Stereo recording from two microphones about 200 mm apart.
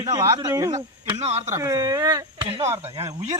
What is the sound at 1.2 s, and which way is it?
Speech, 30° right (ahead or behind).